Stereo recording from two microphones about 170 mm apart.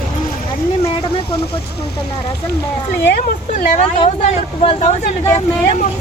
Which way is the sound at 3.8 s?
35° left (ahead or behind).